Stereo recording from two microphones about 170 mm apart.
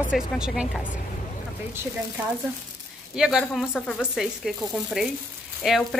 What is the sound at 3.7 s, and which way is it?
Speech, 10° left (ahead or behind).